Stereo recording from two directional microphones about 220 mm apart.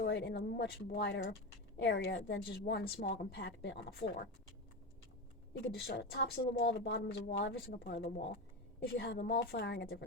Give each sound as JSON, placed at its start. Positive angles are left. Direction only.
{"t": 0.0, "sound": "speech", "side_deg": 50}
{"t": 5.8, "sound": "speech", "side_deg": 50}